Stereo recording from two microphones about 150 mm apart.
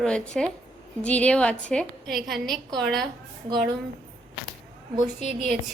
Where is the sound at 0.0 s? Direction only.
5° left (ahead or behind).